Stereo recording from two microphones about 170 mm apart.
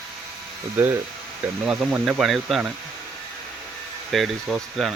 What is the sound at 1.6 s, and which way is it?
Speech, 5° right (ahead or behind).